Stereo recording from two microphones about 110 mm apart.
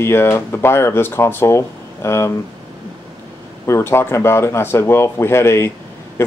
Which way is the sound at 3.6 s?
25° left (ahead or behind).